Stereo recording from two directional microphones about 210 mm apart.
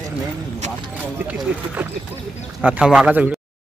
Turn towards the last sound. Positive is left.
turn(degrees=-5)  # may be behind; listen again after turning